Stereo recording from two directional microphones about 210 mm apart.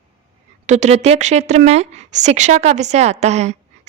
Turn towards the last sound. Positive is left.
turn(degrees=-30)  # may be behind; listen again after turning